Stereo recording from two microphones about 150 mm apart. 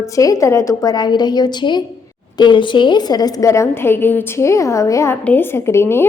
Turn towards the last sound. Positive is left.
turn(degrees=15)  # may be behind; listen again after turning